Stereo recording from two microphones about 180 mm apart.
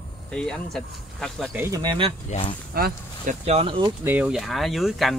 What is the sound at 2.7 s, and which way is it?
Speech, 60° right (ahead or behind).